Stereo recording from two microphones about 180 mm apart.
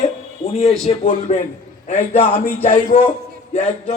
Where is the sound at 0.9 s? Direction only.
40° left (ahead or behind).